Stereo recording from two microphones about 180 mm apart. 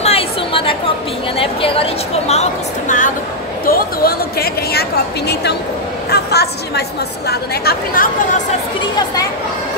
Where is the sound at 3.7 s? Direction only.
55° left (ahead or behind).